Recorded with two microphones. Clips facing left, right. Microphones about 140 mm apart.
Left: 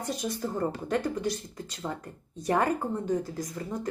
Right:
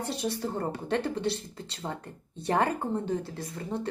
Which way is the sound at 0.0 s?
30° right (ahead or behind).